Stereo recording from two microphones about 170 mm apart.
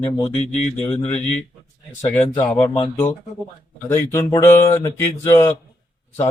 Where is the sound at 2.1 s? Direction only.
10° left (ahead or behind).